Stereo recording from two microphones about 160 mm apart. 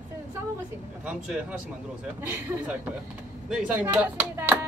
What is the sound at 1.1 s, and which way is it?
A woman's voice, 10° right (ahead or behind).